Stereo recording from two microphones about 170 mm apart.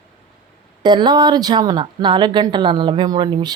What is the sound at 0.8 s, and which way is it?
A woman's voice, 25° right (ahead or behind).